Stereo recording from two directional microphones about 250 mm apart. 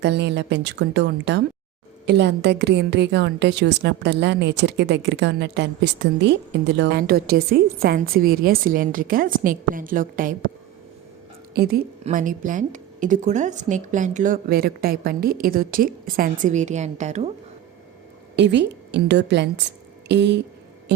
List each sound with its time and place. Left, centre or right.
0.0 s a woman's voice: right
11.5 s a woman's voice: right
18.3 s a woman's voice: right